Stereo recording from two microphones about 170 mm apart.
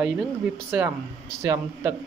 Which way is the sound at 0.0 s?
10° right (ahead or behind).